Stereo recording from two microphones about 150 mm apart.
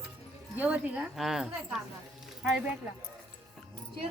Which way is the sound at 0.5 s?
10° right (ahead or behind).